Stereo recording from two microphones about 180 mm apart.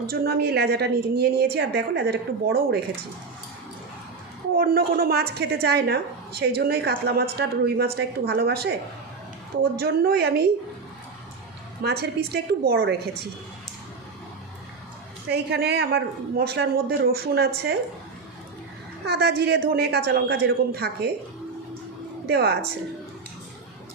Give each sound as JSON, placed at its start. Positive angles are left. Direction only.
{"t": 0.1, "sound": "a woman's voice", "side_deg": -60}
{"t": 4.5, "sound": "a woman's voice", "side_deg": -60}
{"t": 9.7, "sound": "a woman's voice", "side_deg": -60}
{"t": 11.8, "sound": "a woman's voice", "side_deg": -65}
{"t": 15.3, "sound": "a woman's voice", "side_deg": -65}
{"t": 19.0, "sound": "a woman's voice", "side_deg": -65}
{"t": 22.3, "sound": "a woman's voice", "side_deg": -65}